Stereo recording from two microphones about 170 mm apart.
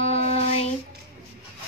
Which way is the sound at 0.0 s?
40° left (ahead or behind).